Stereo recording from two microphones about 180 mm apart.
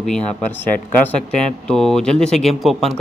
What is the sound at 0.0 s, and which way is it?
A man's voice, 5° left (ahead or behind).